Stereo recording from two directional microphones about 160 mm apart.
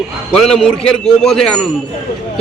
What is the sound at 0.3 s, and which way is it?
A man's voice, 5° left (ahead or behind).